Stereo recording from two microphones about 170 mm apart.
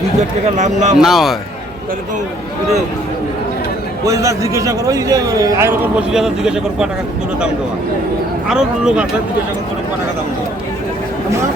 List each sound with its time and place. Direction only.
0.2 s speech: 45° right (ahead or behind)
0.9 s speech: centre (ahead or behind)
4.0 s a man's voice: 20° right (ahead or behind)
8.4 s speech: 5° right (ahead or behind)